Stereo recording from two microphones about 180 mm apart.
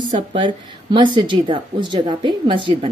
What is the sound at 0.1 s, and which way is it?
A woman's voice, 30° right (ahead or behind).